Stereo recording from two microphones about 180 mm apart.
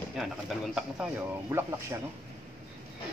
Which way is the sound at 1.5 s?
10° right (ahead or behind).